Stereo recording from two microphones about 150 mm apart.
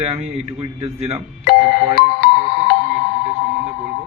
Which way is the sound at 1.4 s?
90° left.